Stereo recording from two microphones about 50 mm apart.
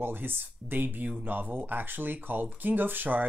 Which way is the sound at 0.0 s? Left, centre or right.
Right.